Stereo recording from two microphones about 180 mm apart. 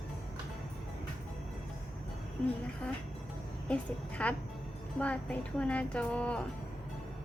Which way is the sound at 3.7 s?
5° left (ahead or behind).